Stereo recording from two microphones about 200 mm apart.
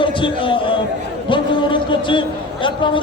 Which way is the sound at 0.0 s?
25° left (ahead or behind).